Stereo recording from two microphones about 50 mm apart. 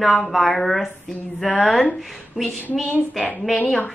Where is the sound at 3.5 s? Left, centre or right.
Left.